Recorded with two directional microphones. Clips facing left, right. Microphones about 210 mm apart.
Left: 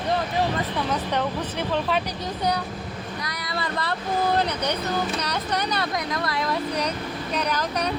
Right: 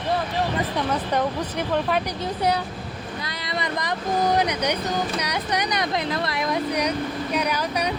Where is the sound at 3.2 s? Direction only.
25° right (ahead or behind).